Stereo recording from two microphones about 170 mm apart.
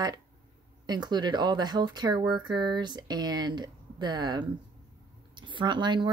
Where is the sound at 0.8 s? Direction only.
25° right (ahead or behind).